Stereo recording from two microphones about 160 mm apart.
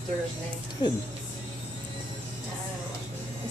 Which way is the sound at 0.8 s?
25° left (ahead or behind).